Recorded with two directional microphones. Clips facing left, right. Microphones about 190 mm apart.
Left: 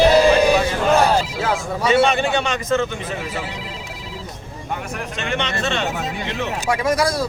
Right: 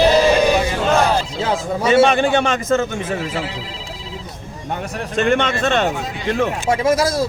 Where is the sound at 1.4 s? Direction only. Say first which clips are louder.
Right 1 dB; 20° right (ahead or behind).